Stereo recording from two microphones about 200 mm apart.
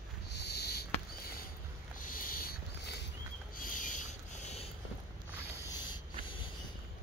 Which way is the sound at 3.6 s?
40° left (ahead or behind).